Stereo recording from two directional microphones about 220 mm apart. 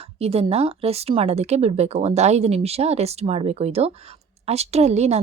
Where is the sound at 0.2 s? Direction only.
25° right (ahead or behind).